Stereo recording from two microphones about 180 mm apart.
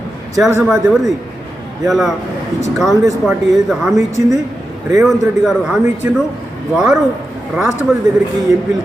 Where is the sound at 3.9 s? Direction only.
15° right (ahead or behind).